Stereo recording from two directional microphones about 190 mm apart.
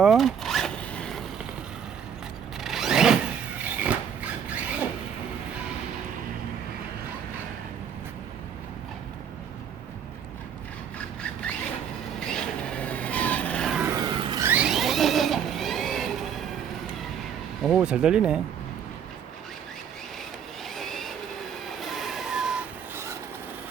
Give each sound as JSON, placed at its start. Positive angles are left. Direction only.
{"t": 0.0, "sound": "vehicle", "side_deg": 0}
{"t": 2.6, "sound": "zipper", "side_deg": 0}
{"t": 3.8, "sound": "a sound", "side_deg": -10}
{"t": 10.9, "sound": "rub", "side_deg": 5}
{"t": 12.2, "sound": "vehicle", "side_deg": 5}
{"t": 13.8, "sound": "vehicle", "side_deg": -20}
{"t": 14.4, "sound": "vehicle", "side_deg": -5}
{"t": 17.6, "sound": "a sound", "side_deg": 0}
{"t": 20.7, "sound": "train", "side_deg": 0}